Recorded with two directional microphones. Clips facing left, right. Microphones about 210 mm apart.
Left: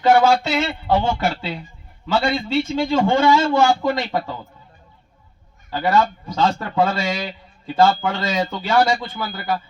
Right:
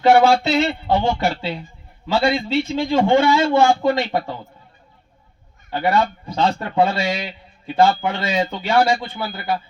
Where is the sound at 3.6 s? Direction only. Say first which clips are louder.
Right 2 dB; 25° right (ahead or behind).